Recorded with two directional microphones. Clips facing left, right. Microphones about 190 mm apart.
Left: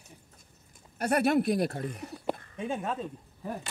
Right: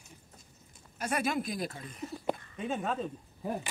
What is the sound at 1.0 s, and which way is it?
Speech, 65° left (ahead or behind).